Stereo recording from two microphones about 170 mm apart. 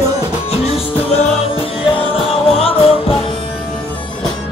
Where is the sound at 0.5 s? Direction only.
35° left (ahead or behind).